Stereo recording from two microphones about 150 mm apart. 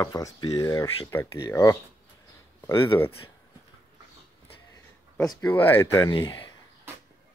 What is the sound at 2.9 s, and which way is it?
Speech, 30° left (ahead or behind).